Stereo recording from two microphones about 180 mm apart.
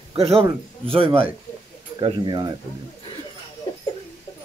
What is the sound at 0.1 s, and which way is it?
Speech, 30° right (ahead or behind).